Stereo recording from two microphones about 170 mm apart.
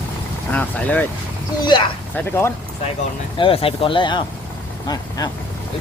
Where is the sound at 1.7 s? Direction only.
25° left (ahead or behind).